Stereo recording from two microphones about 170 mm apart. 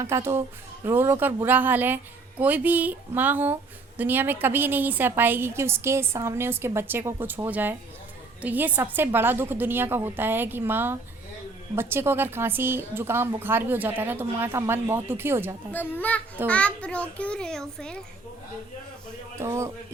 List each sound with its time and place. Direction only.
0.0 s a woman's voice: 15° right (ahead or behind)
15.7 s a child's voice: 10° left (ahead or behind)
19.4 s a woman's voice: 15° right (ahead or behind)